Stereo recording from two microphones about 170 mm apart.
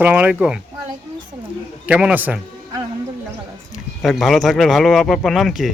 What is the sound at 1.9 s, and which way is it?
Speech, 5° right (ahead or behind).